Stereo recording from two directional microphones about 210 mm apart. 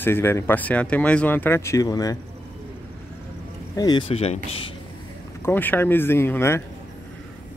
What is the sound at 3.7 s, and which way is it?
Speech, 20° left (ahead or behind).